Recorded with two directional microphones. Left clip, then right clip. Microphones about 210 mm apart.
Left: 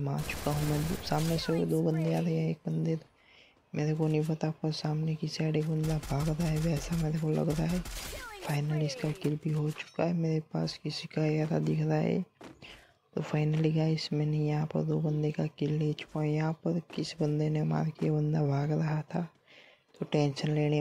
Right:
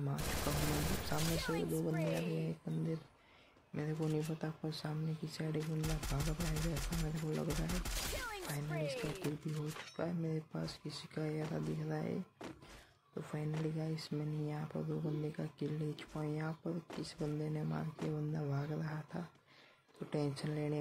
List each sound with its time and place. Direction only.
0.1 s speech: centre (ahead or behind)
2.3 s speech: 30° left (ahead or behind)
4.0 s speech: centre (ahead or behind)
4.3 s speech: 30° left (ahead or behind)
5.6 s speech: centre (ahead or behind)
9.9 s speech: 30° left (ahead or behind)
13.2 s speech: 40° left (ahead or behind)